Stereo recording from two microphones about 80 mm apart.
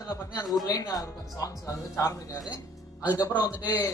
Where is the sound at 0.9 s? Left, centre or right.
Left.